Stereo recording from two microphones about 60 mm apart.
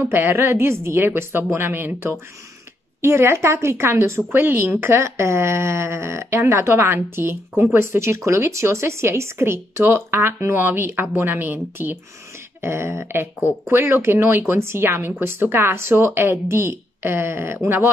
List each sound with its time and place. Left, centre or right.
0.0 s a woman's voice: right
4.3 s a woman's voice: right
5.0 s speech: right
12.6 s a woman's voice: right